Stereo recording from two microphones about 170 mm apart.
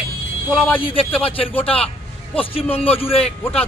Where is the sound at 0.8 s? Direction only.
30° left (ahead or behind).